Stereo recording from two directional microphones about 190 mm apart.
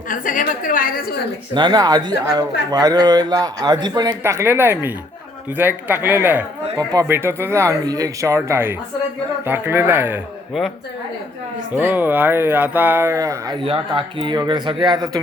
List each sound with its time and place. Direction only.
0.1 s a woman's voice: 45° left (ahead or behind)
1.5 s speech: 25° right (ahead or behind)
11.7 s speech: 10° right (ahead or behind)
13.7 s speech: 25° right (ahead or behind)